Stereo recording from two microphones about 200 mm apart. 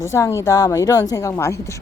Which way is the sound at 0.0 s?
15° left (ahead or behind).